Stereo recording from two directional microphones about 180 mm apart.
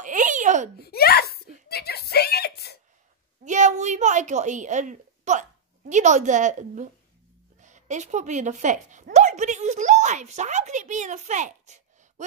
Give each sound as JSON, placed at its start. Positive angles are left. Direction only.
{"t": 0.0, "sound": "babbling", "side_deg": -45}
{"t": 0.7, "sound": "a sound", "side_deg": 60}
{"t": 3.4, "sound": "a woman's voice", "side_deg": -40}